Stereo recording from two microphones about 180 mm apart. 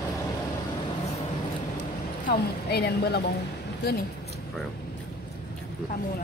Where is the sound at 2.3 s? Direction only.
65° left (ahead or behind).